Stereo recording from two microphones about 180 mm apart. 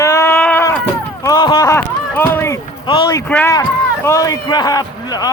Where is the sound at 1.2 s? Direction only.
20° left (ahead or behind).